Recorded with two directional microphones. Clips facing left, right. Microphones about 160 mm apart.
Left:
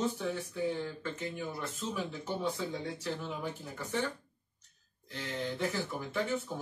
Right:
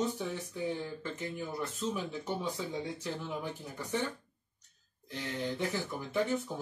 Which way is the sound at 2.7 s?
15° right (ahead or behind).